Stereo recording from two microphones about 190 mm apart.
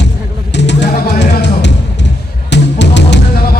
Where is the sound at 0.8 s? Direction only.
50° left (ahead or behind).